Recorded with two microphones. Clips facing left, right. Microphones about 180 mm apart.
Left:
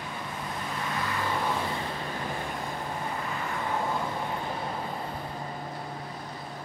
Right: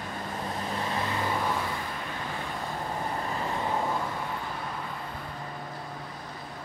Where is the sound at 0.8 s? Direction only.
30° right (ahead or behind).